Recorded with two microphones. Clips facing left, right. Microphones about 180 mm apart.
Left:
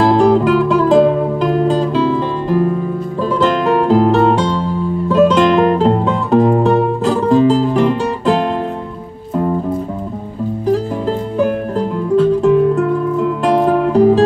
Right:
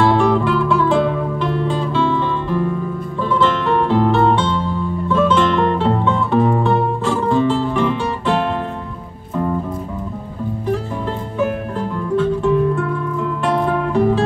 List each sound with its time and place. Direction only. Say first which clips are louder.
0.0 s music: left 4 dB; 40° left (ahead or behind)
12.2 s music: left 5 dB; 40° left (ahead or behind)